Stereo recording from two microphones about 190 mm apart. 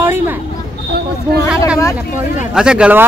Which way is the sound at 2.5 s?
5° right (ahead or behind).